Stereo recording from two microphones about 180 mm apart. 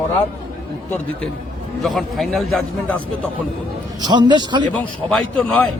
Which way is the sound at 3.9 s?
25° right (ahead or behind).